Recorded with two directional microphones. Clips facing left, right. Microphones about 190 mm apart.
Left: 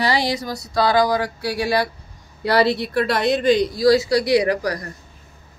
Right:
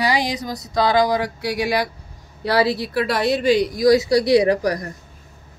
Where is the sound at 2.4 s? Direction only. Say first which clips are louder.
Left 1 dB; centre (ahead or behind); by 4.9 s 20° right (ahead or behind).